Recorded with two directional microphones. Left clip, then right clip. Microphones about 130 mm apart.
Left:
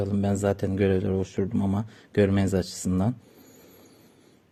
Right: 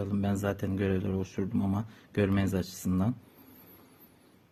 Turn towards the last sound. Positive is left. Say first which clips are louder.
# left 4 dB
turn(degrees=40)  # may be behind; listen again after turning